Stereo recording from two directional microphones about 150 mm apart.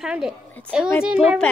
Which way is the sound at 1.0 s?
5° right (ahead or behind).